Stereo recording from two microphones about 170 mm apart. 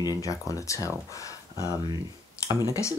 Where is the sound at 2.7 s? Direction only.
15° left (ahead or behind).